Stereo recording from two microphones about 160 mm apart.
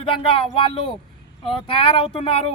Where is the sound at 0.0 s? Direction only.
35° left (ahead or behind).